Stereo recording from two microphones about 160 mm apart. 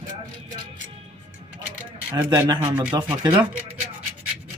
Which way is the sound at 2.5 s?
25° right (ahead or behind).